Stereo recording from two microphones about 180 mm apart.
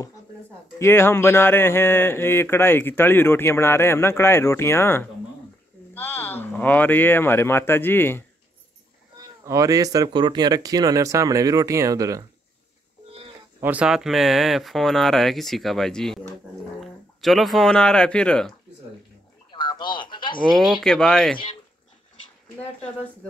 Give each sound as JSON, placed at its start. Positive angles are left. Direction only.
{"t": 0.7, "sound": "speech", "side_deg": 15}
{"t": 9.5, "sound": "speech", "side_deg": -20}
{"t": 13.6, "sound": "speech", "side_deg": -10}
{"t": 19.5, "sound": "sheep", "side_deg": 25}
{"t": 20.8, "sound": "speech", "side_deg": 5}